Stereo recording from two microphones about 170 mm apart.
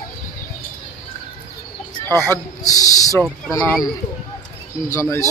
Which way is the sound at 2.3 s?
20° left (ahead or behind).